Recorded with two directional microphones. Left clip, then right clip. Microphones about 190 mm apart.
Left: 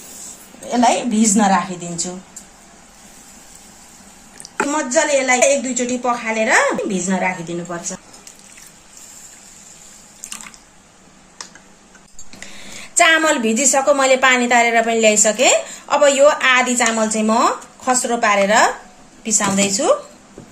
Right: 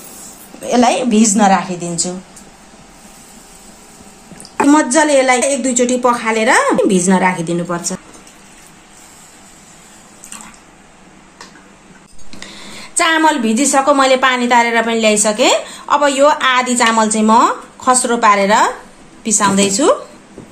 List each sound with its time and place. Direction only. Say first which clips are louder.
0.7 s a woman's voice: right 3 dB; 15° right (ahead or behind)
4.6 s a woman's voice: right 6 dB; 40° right (ahead or behind)
12.4 s a woman's voice: right 4 dB; centre (ahead or behind)